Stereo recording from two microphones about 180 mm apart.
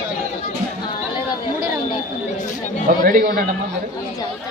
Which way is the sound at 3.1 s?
50° right (ahead or behind).